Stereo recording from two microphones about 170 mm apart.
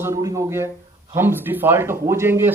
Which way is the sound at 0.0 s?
20° right (ahead or behind).